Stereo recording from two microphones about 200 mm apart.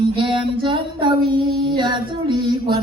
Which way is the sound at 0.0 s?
25° right (ahead or behind).